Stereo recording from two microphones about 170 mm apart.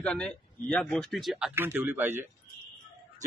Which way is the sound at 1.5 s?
10° right (ahead or behind).